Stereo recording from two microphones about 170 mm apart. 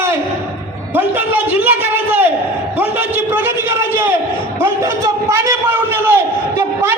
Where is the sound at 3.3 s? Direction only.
10° right (ahead or behind).